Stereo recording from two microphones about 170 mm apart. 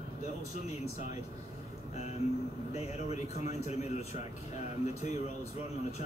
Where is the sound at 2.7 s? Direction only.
40° left (ahead or behind).